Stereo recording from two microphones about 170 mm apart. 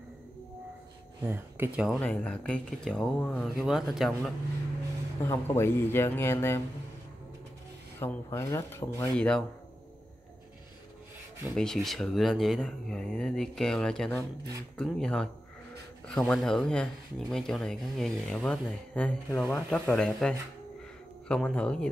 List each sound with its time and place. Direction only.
1.2 s speech: 15° right (ahead or behind)
1.9 s speech: 10° left (ahead or behind)
5.2 s speech: 15° left (ahead or behind)
8.0 s speech: 15° left (ahead or behind)
9.1 s speech: 5° left (ahead or behind)
11.5 s speech: 5° left (ahead or behind)